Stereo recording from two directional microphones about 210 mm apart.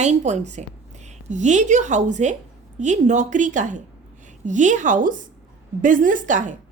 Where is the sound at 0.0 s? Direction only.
35° right (ahead or behind).